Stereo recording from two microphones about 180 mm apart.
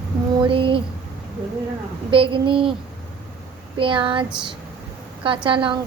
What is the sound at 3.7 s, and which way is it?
A woman's voice, 30° right (ahead or behind).